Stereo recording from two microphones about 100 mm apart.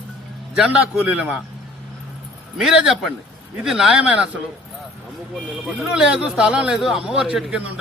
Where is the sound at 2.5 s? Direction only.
5° right (ahead or behind).